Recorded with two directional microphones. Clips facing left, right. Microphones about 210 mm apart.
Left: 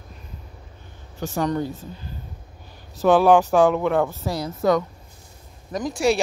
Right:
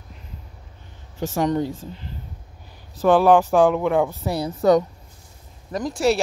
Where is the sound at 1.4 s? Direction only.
25° right (ahead or behind).